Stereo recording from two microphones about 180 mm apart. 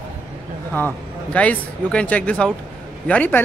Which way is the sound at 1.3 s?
5° left (ahead or behind).